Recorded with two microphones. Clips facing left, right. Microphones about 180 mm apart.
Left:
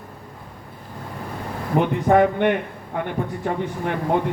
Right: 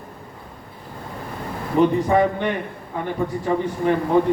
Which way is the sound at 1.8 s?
60° left (ahead or behind).